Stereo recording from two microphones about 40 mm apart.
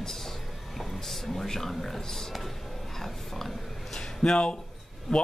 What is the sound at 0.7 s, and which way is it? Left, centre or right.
Speech, centre.